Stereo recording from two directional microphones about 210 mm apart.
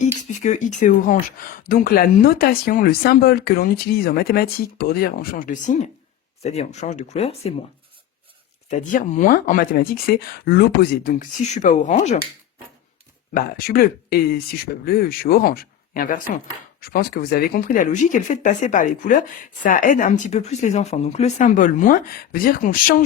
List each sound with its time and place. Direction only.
0.0 s speech: 35° left (ahead or behind)
8.7 s speech: 35° left (ahead or behind)
13.3 s speech: 45° left (ahead or behind)